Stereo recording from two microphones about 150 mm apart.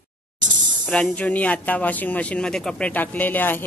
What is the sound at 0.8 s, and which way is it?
Speech, 5° left (ahead or behind).